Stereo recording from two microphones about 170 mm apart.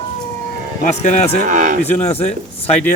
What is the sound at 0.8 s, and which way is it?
Speech, 45° left (ahead or behind).